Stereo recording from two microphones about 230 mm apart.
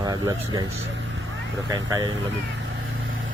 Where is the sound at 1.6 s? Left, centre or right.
Centre.